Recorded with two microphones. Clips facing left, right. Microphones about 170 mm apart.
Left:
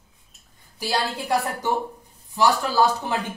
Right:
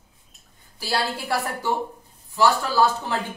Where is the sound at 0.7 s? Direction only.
15° left (ahead or behind).